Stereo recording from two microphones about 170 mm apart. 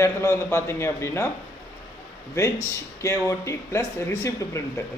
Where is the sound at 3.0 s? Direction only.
15° left (ahead or behind).